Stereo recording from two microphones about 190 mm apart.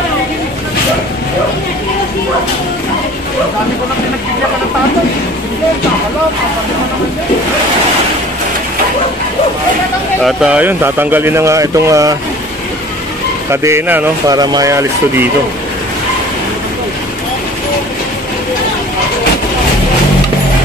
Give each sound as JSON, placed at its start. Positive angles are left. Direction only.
{"t": 10.2, "sound": "speech", "side_deg": -5}
{"t": 13.5, "sound": "speech", "side_deg": -15}
{"t": 14.3, "sound": "speech", "side_deg": -20}